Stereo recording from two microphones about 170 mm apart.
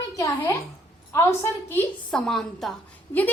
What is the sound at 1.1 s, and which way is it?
A woman's voice, 15° left (ahead or behind).